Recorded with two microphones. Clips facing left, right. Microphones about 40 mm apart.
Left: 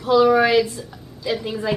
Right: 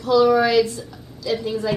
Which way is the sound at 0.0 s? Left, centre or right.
Left.